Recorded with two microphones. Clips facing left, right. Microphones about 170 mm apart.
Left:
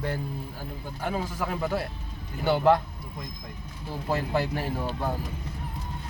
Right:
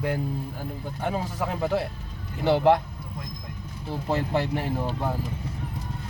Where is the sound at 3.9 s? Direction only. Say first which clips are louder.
Right 2 dB; 20° right (ahead or behind).